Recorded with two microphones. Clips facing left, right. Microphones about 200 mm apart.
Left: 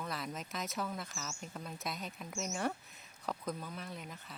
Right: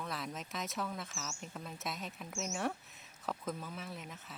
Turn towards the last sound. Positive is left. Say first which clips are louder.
# even
turn(degrees=0)  # may be behind; listen again after turning